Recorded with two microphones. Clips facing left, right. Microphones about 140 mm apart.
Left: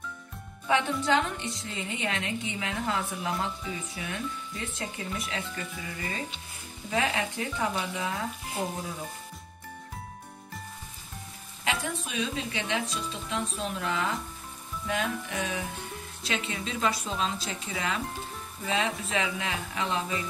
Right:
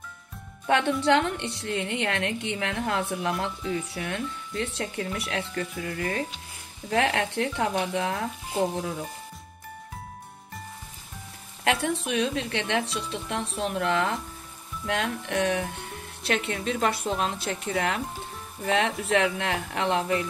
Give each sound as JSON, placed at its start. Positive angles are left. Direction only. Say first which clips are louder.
{"t": 0.7, "sound": "a woman's voice", "louder": "right 4 dB", "side_deg": -70}
{"t": 11.6, "sound": "a woman's voice", "louder": "right 6 dB", "side_deg": -70}